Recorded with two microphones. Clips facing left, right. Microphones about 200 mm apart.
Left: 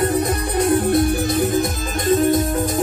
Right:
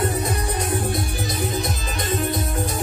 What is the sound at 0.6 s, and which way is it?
Music, 60° left (ahead or behind).